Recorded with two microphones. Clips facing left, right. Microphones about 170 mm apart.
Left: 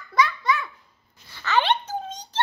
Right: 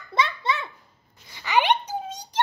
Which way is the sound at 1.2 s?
15° right (ahead or behind).